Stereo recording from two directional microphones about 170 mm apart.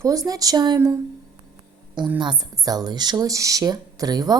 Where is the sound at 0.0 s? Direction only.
20° right (ahead or behind).